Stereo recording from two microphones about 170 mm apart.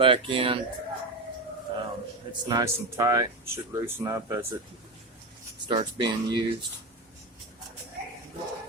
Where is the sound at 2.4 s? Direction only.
25° right (ahead or behind).